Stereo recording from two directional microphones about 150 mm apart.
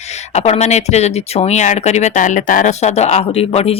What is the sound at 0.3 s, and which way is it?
Speech, 45° left (ahead or behind).